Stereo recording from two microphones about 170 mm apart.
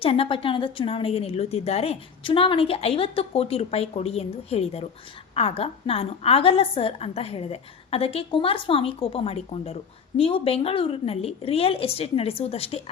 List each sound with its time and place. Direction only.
0.0 s a woman's voice: 35° left (ahead or behind)